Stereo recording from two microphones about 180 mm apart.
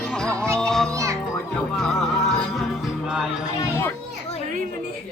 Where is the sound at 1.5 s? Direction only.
5° left (ahead or behind).